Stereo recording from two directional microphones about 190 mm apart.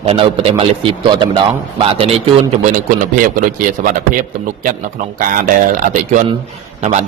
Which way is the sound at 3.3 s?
45° right (ahead or behind).